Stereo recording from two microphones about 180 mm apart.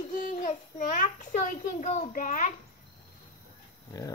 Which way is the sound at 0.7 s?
45° left (ahead or behind).